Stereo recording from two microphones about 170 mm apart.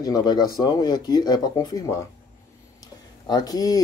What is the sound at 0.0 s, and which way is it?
Speech, 25° left (ahead or behind).